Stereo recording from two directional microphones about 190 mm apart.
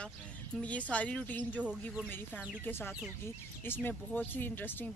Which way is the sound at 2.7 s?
10° left (ahead or behind).